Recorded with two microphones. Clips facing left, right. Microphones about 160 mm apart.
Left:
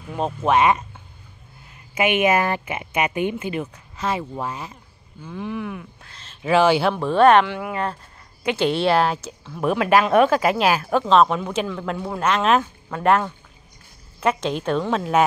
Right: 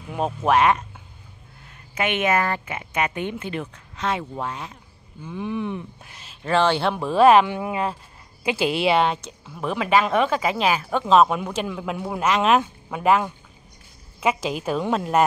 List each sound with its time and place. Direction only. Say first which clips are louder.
0.1 s speech: even; centre (ahead or behind)
2.0 s speech: left 3 dB; 10° left (ahead or behind)
5.2 s speech: right 1 dB; 15° right (ahead or behind)
6.0 s speech: right 1 dB; 10° right (ahead or behind)
6.4 s speech: left 3 dB; 10° left (ahead or behind); by 7.5 s 5° right (ahead or behind)
7.5 s speech: right 1 dB; 20° right (ahead or behind)
8.5 s speech: left 2 dB; 5° right (ahead or behind)
11.1 s speech: right 1 dB; 5° right (ahead or behind)
14.2 s speech: left 2 dB; 5° right (ahead or behind)